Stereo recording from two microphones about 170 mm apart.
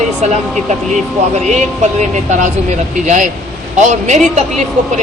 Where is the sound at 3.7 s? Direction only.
45° right (ahead or behind).